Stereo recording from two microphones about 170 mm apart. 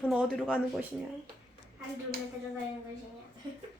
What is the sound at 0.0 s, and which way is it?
Speech, centre (ahead or behind).